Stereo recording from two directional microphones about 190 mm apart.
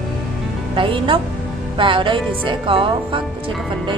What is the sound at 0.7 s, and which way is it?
A woman's voice, 25° right (ahead or behind).